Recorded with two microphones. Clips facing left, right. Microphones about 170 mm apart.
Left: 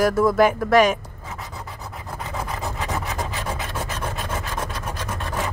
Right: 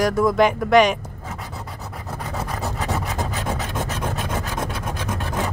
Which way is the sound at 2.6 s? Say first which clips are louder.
Right 2 dB; 35° right (ahead or behind).